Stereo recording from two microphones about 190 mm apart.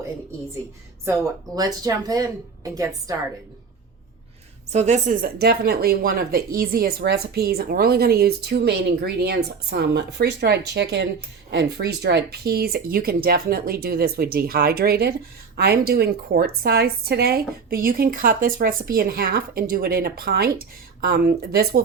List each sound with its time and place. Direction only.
1.0 s speech: 15° right (ahead or behind)
4.7 s speech: 35° right (ahead or behind); by 21.7 s 55° right (ahead or behind)